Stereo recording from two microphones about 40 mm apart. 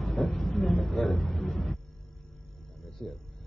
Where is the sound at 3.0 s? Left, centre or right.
Left.